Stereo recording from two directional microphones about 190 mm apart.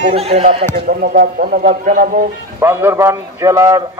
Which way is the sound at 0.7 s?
50° right (ahead or behind).